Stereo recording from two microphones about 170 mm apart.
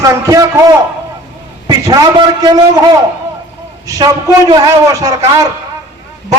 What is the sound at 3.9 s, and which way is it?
A man's voice, 20° right (ahead or behind).